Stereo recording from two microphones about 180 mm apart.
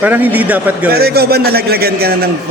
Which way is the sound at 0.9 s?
60° right (ahead or behind).